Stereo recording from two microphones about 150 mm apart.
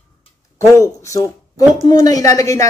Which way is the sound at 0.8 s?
20° left (ahead or behind).